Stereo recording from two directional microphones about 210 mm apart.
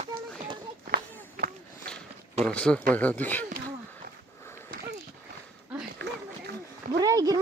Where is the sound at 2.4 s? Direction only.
5° left (ahead or behind).